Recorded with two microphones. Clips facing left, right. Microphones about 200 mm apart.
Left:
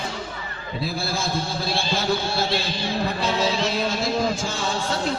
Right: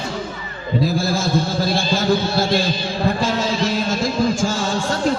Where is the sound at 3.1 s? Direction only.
45° right (ahead or behind).